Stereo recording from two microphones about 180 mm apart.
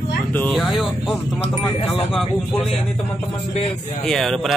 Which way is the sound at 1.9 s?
30° left (ahead or behind).